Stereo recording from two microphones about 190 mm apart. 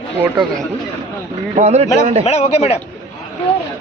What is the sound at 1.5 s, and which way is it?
Speech, 35° right (ahead or behind).